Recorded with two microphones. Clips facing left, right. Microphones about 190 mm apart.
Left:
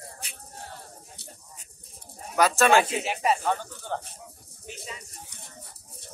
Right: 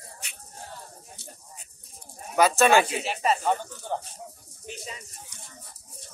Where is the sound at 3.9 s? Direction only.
15° right (ahead or behind).